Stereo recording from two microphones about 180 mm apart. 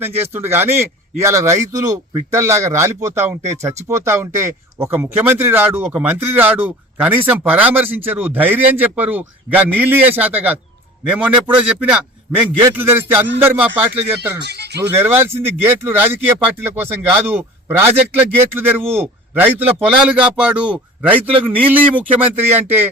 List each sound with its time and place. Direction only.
0.0 s speech: 10° right (ahead or behind)
14.3 s speech: 65° right (ahead or behind)
14.8 s speech: 10° right (ahead or behind)